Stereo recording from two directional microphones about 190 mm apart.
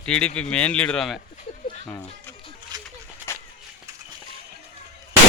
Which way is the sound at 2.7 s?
20° right (ahead or behind).